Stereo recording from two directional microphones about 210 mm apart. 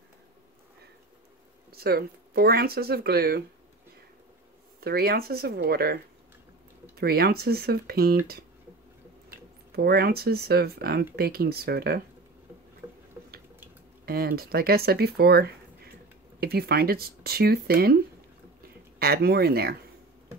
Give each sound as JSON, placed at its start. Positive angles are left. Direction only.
{"t": 1.7, "sound": "speech", "side_deg": -45}
{"t": 4.7, "sound": "speech", "side_deg": -45}
{"t": 7.0, "sound": "speech", "side_deg": -45}
{"t": 9.3, "sound": "speech", "side_deg": -50}
{"t": 13.2, "sound": "drip", "side_deg": -10}
{"t": 14.0, "sound": "speech", "side_deg": -45}
{"t": 18.9, "sound": "speech", "side_deg": -45}